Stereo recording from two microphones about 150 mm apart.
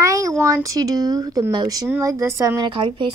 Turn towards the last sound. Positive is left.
turn(degrees=-35)  # may be behind; listen again after turning